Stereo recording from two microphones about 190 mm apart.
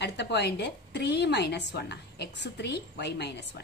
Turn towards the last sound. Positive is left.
turn(degrees=65)  # may be behind; listen again after turning